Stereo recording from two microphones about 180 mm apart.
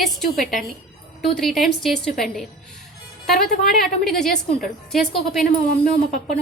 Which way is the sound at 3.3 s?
55° left (ahead or behind).